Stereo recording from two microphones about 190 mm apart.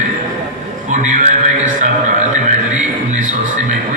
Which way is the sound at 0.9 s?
40° right (ahead or behind).